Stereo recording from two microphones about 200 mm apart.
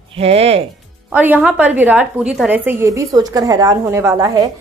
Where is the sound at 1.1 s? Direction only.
10° right (ahead or behind).